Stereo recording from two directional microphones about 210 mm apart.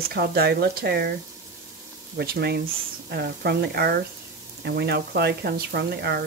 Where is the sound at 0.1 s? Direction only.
50° right (ahead or behind).